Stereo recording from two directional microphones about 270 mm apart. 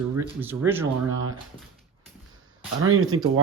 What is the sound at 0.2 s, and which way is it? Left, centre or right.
Speech, centre.